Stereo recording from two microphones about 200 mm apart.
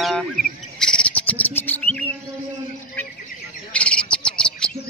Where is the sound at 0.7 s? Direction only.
5° left (ahead or behind).